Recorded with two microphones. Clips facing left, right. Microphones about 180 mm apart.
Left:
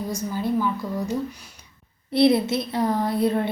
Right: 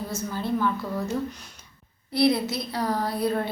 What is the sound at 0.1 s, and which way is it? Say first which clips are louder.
A woman's voice: left 3 dB; 15° left (ahead or behind).